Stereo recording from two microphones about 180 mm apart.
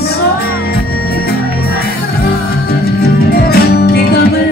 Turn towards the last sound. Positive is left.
turn(degrees=60)  # may be behind; listen again after turning